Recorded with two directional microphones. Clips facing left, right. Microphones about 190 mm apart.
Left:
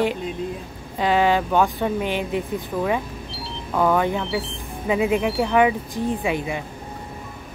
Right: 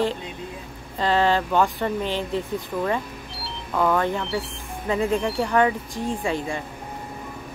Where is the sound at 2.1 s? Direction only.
15° left (ahead or behind).